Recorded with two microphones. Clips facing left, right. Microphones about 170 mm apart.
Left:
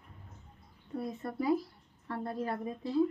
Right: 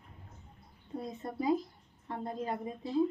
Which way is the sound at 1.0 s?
20° right (ahead or behind).